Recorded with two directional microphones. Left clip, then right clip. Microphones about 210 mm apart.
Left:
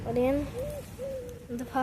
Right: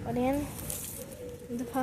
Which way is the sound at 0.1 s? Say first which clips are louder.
Left 3 dB; 10° left (ahead or behind).